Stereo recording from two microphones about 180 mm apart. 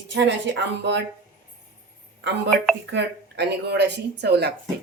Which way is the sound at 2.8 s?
70° right (ahead or behind).